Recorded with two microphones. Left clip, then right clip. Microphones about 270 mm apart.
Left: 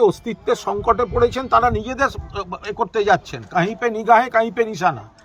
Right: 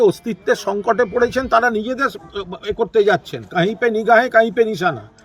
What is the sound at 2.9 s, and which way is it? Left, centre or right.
A man's voice, centre.